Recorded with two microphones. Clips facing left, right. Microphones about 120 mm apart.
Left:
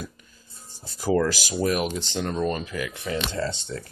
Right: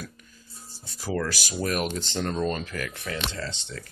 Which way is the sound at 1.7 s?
5° left (ahead or behind).